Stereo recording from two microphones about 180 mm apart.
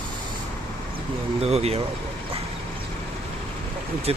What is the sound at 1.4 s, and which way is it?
Speech, 35° right (ahead or behind).